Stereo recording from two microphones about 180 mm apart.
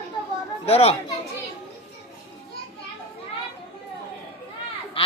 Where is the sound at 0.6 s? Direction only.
35° left (ahead or behind).